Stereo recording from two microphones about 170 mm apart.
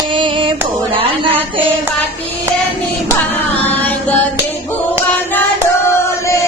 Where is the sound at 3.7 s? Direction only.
10° left (ahead or behind).